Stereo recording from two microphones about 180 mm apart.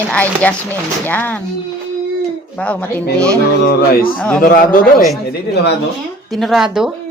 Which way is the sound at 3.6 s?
55° left (ahead or behind).